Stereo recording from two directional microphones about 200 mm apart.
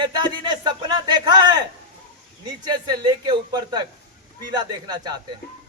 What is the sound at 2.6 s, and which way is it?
Speech, 20° right (ahead or behind).